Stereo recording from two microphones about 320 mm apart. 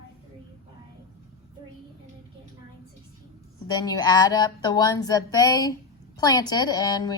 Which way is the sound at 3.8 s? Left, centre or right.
Centre.